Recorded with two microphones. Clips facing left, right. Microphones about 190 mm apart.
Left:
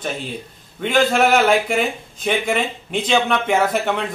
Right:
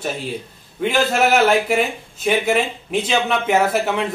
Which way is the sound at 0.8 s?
5° right (ahead or behind).